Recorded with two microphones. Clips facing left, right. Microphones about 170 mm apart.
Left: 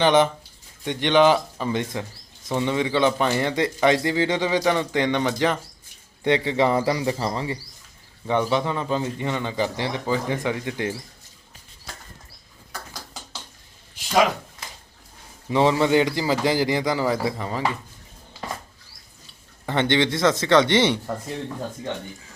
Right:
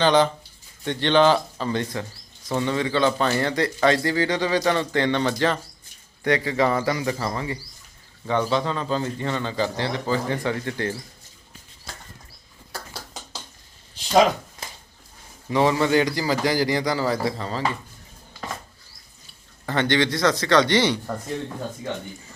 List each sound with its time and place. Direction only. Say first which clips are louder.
0.0 s a man's voice: left 1 dB; 20° left (ahead or behind)
15.4 s a man's voice: left 1 dB; 20° left (ahead or behind)
19.6 s a man's voice: left 1 dB; 20° left (ahead or behind)